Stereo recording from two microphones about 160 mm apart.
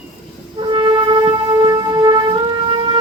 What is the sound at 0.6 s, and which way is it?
Wind instrument, 30° right (ahead or behind).